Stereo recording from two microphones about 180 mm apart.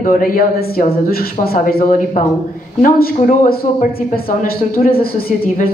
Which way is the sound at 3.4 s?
55° left (ahead or behind).